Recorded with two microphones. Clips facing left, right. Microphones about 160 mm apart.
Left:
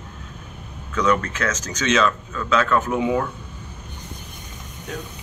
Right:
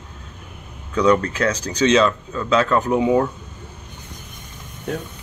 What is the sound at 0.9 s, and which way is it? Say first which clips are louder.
Speech: right 4 dB; 35° right (ahead or behind).